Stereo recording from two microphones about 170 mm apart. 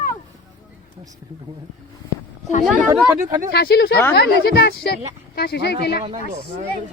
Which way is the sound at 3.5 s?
70° left (ahead or behind).